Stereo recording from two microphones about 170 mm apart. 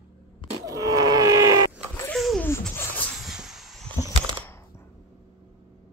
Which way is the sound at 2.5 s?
10° left (ahead or behind).